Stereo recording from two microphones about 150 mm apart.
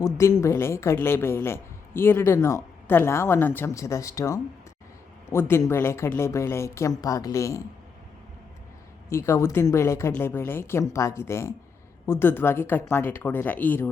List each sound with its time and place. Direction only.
0.0 s a woman's voice: 20° left (ahead or behind)
9.0 s a woman's voice: 20° left (ahead or behind)